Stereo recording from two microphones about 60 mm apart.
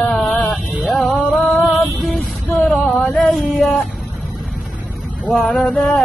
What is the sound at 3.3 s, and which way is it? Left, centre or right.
Female singing, centre.